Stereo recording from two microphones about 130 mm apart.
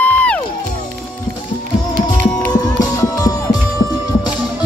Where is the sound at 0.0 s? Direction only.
10° left (ahead or behind).